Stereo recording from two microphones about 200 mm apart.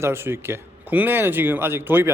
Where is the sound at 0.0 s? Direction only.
10° right (ahead or behind).